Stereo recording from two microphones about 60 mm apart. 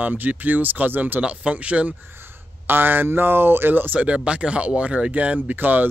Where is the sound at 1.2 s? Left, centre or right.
Right.